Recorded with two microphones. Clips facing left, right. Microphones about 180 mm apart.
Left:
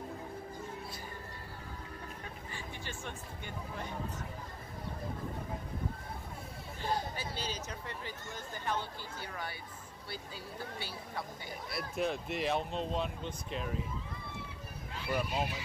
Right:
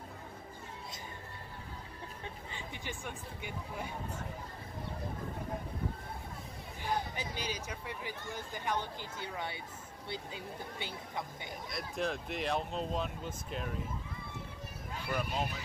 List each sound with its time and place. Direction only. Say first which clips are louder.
2.5 s speech: even; 15° right (ahead or behind)
6.8 s speech: even; 15° right (ahead or behind)
11.7 s speech: left 2 dB; centre (ahead or behind)
15.0 s speech: left 2 dB; 5° left (ahead or behind)